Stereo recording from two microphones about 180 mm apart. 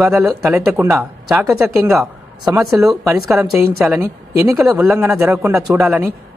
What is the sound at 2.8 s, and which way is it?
Speech, 5° right (ahead or behind).